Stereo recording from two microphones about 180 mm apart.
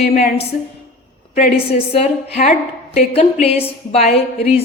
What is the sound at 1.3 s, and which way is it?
Speech, 35° left (ahead or behind).